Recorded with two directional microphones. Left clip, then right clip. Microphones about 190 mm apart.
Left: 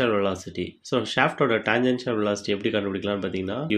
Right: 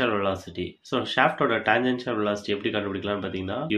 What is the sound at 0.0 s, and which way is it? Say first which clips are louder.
Speech: left 1 dB; 35° left (ahead or behind).